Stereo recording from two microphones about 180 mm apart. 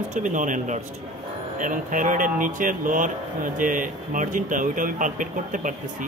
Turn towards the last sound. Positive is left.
turn(degrees=-45)  # may be behind; listen again after turning